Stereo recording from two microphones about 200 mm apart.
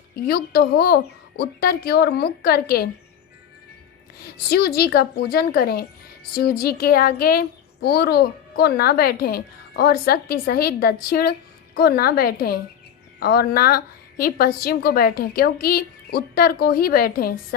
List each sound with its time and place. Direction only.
0.3 s a woman's voice: 50° left (ahead or behind)
4.2 s a woman's voice: 50° left (ahead or behind)